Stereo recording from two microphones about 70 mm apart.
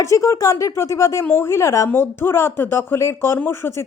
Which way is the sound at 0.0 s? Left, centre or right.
Left.